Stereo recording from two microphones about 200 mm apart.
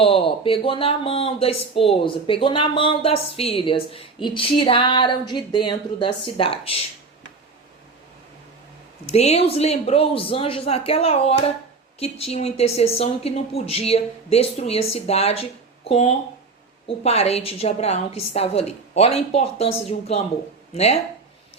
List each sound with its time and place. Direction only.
0.0 s speech: 25° left (ahead or behind)
9.0 s speech: 30° left (ahead or behind)